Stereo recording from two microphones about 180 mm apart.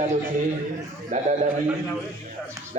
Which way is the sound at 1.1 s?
45° right (ahead or behind).